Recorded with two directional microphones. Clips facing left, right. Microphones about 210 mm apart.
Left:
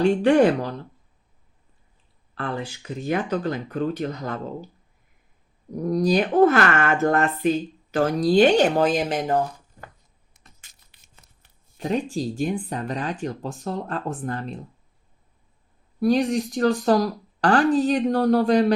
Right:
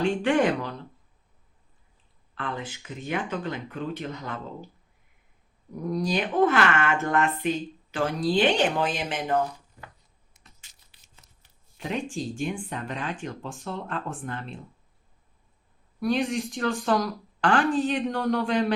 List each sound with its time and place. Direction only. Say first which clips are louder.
0.0 s speech: left 6 dB; 40° left (ahead or behind)
2.3 s speech: left 4 dB; 35° left (ahead or behind)
5.7 s speech: left 7 dB; 40° left (ahead or behind)
10.3 s crushing: left 2 dB; 55° left (ahead or behind)
11.8 s speech: left 6 dB; 40° left (ahead or behind)
16.0 s speech: left 5 dB; 40° left (ahead or behind)